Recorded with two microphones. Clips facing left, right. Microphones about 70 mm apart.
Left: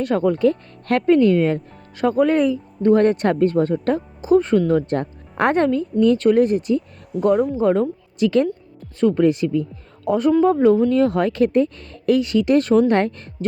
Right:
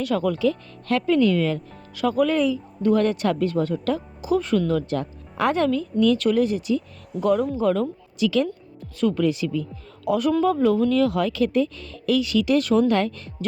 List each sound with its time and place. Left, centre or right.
0.0 s speech: left
5.6 s speech: left
7.1 s speech: centre
7.5 s speech: left
8.2 s speech: left